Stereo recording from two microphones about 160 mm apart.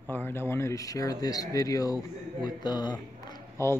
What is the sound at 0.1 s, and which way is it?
A man's voice, 15° left (ahead or behind).